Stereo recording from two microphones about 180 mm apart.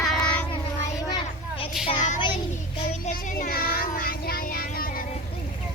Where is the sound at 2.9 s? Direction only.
45° left (ahead or behind).